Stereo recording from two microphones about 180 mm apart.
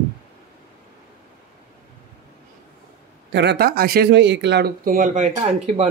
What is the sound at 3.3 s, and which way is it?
Speech, 75° right (ahead or behind).